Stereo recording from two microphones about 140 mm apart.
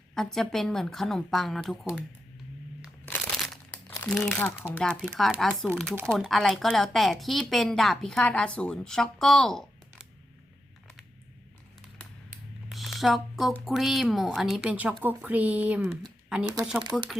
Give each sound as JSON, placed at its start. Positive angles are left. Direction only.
{"t": 0.1, "sound": "a woman's voice", "side_deg": 5}
{"t": 3.3, "sound": "crumpling", "side_deg": 0}
{"t": 4.0, "sound": "speech", "side_deg": 10}
{"t": 4.9, "sound": "a woman's voice", "side_deg": -5}
{"t": 12.7, "sound": "a sound", "side_deg": 0}
{"t": 13.7, "sound": "a woman's voice", "side_deg": 0}
{"t": 16.9, "sound": "a woman's voice", "side_deg": 0}